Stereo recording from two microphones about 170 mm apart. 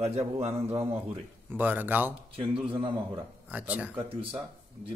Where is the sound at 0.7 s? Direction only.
15° right (ahead or behind).